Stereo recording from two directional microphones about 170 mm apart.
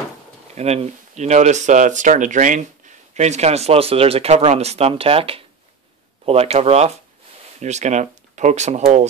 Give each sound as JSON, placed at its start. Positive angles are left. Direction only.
{"t": 0.6, "sound": "speech", "side_deg": -40}